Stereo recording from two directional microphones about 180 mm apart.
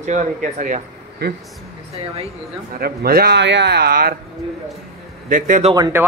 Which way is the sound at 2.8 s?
60° right (ahead or behind).